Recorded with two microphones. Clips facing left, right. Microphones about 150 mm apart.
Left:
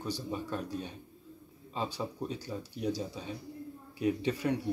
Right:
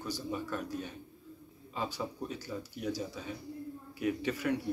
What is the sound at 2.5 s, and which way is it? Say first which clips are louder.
Speech: even; 20° left (ahead or behind).